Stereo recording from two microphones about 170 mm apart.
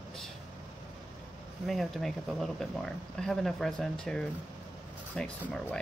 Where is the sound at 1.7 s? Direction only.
Centre (ahead or behind).